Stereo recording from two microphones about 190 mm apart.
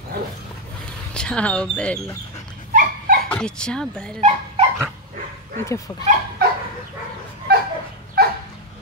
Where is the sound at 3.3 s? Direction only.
5° left (ahead or behind).